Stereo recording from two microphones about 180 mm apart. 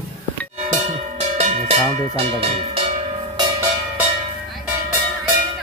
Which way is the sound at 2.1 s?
35° right (ahead or behind).